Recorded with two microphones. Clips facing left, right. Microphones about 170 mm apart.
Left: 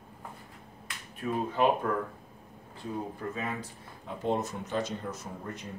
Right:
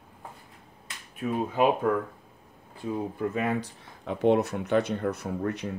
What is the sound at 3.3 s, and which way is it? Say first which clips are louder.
Speech: right 8 dB; 70° right (ahead or behind).